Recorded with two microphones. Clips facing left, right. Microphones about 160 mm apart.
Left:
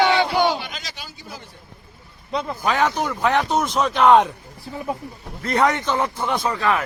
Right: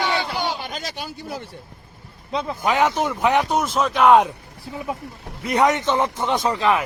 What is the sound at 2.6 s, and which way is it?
Speech, 20° right (ahead or behind).